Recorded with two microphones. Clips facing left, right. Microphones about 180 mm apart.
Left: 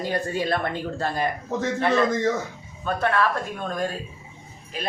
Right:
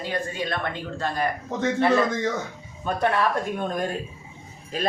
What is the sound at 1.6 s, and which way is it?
Speech, 5° right (ahead or behind).